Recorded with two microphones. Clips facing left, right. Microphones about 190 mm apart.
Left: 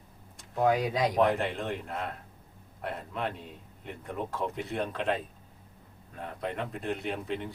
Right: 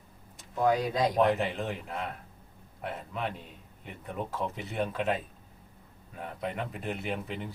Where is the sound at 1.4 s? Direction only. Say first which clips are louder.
Even; centre (ahead or behind).